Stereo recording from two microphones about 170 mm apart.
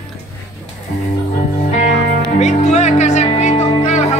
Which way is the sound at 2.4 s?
40° left (ahead or behind).